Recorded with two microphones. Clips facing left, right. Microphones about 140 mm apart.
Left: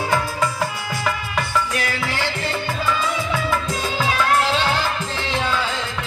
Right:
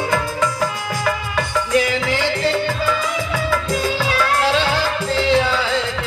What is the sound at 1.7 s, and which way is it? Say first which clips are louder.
Music: right 7 dB; 15° right (ahead or behind).